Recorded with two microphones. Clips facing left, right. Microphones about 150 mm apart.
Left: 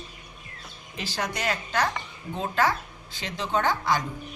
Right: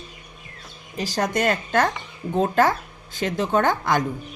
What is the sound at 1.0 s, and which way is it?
Speech, 40° right (ahead or behind).